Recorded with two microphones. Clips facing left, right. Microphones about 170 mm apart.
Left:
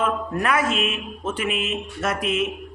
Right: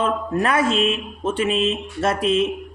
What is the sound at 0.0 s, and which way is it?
A man's voice, 30° right (ahead or behind).